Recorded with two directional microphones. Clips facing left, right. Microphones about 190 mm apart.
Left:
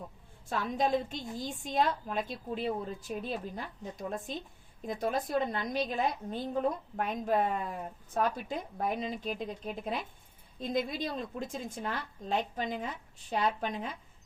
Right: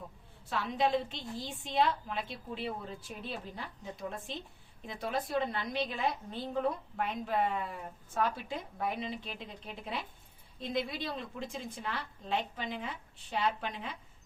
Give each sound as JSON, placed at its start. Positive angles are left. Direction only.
{"t": 0.4, "sound": "a woman's voice", "side_deg": 45}